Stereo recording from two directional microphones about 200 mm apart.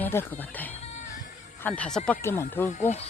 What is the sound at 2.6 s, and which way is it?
Speech, 35° left (ahead or behind).